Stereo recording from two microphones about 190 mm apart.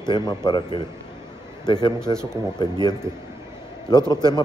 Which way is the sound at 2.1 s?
25° left (ahead or behind).